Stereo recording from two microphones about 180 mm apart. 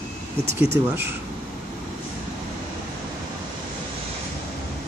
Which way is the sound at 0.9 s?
10° right (ahead or behind).